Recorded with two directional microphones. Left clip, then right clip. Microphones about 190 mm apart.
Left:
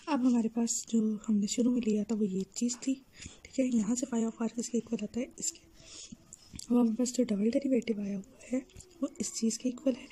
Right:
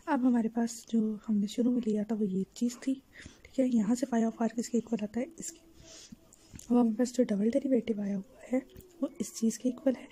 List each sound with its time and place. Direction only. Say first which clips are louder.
0.0 s a woman's voice: right 1 dB; 5° left (ahead or behind)
6.7 s a woman's voice: right 1 dB; 5° left (ahead or behind)